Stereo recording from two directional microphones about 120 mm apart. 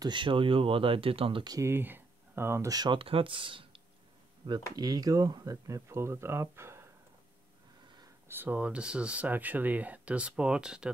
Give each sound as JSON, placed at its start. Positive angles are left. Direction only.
{"t": 0.0, "sound": "speech", "side_deg": -40}
{"t": 1.5, "sound": "speech", "side_deg": -20}
{"t": 4.5, "sound": "speech", "side_deg": -35}
{"t": 8.3, "sound": "speech", "side_deg": -15}